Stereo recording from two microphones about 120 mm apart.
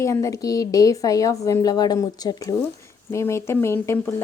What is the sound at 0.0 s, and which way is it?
A woman's voice, 25° left (ahead or behind).